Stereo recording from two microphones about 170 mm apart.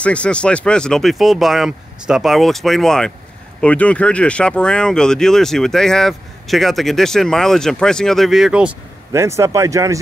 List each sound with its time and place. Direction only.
0.0 s speech: 5° left (ahead or behind)
9.1 s speech: 15° right (ahead or behind)